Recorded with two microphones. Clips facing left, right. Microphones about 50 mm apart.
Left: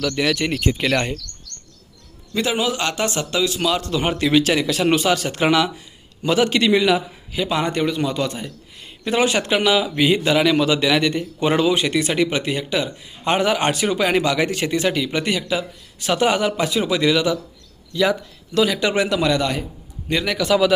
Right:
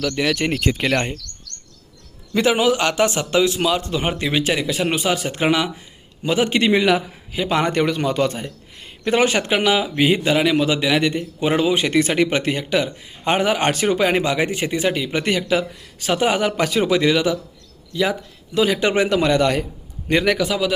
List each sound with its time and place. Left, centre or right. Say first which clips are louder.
0.0 s speech: even; right
0.3 s a man's voice: right 1 dB; right
0.9 s a man's voice: left 1 dB; centre
2.3 s speech: right 4 dB; right
3.6 s a man's voice: even; centre; by 9.5 s right
9.5 s a man's voice: even; right
11.7 s a man's voice: right 2 dB; right
16.1 s speech: left 1 dB; right
16.6 s a man's voice: right 2 dB; right; by 18.6 s centre
18.6 s a man's voice: right 1 dB; right